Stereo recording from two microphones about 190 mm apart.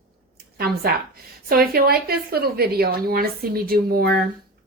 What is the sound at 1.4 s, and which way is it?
A woman's voice, 50° right (ahead or behind).